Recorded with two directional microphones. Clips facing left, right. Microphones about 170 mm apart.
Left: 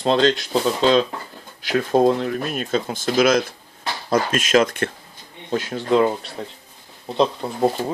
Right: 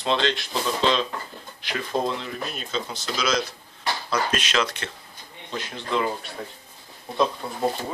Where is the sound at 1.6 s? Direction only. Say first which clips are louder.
Left 10 dB; 45° left (ahead or behind).